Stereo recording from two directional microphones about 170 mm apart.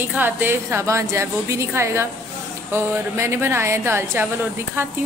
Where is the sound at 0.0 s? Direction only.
10° right (ahead or behind).